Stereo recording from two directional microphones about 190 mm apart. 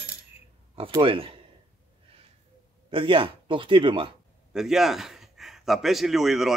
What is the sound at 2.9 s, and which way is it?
A man's voice, 25° right (ahead or behind).